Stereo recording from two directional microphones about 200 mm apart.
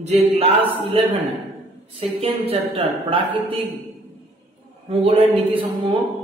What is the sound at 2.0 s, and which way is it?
A woman's voice, 30° right (ahead or behind).